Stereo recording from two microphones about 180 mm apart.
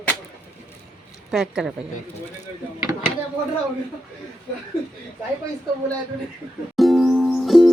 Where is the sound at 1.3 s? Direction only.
5° right (ahead or behind).